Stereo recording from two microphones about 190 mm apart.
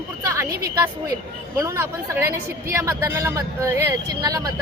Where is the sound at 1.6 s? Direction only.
15° right (ahead or behind).